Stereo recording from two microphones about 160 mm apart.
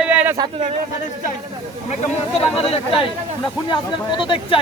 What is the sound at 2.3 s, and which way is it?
Speech, 35° left (ahead or behind).